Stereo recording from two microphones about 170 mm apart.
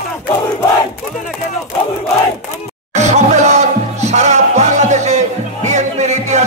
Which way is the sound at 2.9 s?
40° right (ahead or behind).